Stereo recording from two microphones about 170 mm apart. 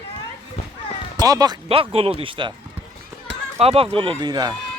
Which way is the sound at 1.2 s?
20° right (ahead or behind).